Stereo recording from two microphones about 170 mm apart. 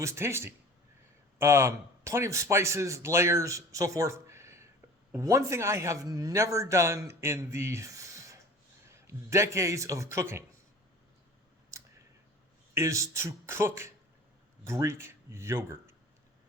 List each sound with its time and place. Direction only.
0.0 s a man's voice: 15° right (ahead or behind)
11.7 s clicking: 20° right (ahead or behind)
12.7 s speech: 15° right (ahead or behind)